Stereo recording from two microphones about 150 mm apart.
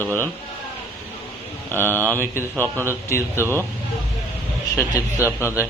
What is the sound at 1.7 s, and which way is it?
Speech, 15° left (ahead or behind).